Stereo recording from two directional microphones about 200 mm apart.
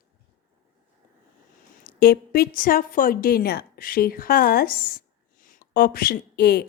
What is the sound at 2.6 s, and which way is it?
A woman's voice, 45° left (ahead or behind).